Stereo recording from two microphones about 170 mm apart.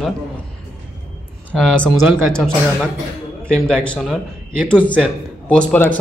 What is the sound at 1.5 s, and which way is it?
Speech, 5° left (ahead or behind).